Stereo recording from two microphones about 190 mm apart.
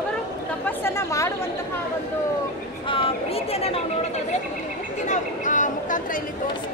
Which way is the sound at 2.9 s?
30° left (ahead or behind).